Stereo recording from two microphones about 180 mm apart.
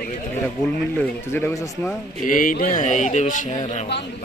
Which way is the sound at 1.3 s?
10° left (ahead or behind).